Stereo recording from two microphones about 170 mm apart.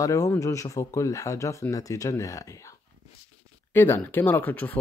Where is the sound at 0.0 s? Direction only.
20° left (ahead or behind).